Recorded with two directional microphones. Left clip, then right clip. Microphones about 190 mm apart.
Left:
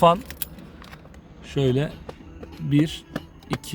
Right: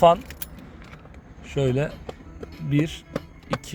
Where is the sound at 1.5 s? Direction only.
15° left (ahead or behind).